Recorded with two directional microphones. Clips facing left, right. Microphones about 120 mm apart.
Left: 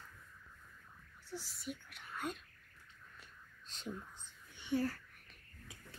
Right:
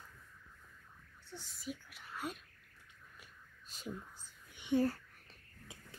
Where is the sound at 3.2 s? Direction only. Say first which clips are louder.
Even; 10° right (ahead or behind).